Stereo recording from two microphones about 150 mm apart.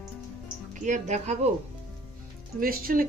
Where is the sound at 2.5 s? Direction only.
75° right (ahead or behind).